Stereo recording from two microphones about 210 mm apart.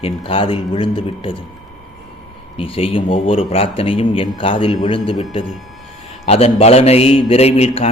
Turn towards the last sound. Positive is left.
turn(degrees=30)  # may be behind; listen again after turning